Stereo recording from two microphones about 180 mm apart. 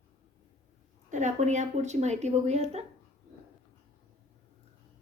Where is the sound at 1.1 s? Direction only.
40° right (ahead or behind).